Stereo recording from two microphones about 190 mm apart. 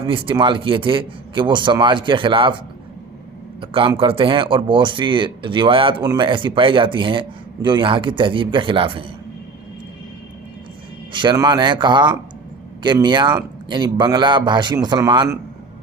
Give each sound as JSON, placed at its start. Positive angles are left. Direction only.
{"t": 0.0, "sound": "speech", "side_deg": -25}
{"t": 3.6, "sound": "speech", "side_deg": -25}
{"t": 11.1, "sound": "speech", "side_deg": -25}